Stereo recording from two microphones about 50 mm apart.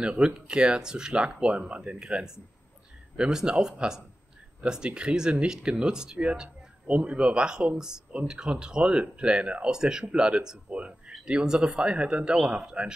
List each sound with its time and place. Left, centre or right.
0.1 s speech: right
0.5 s speech: centre